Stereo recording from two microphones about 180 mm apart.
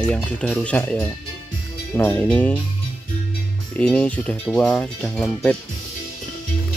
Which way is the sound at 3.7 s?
5° left (ahead or behind).